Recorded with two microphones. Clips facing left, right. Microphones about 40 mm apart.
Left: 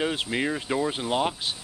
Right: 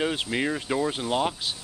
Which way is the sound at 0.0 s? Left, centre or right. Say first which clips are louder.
Even; centre.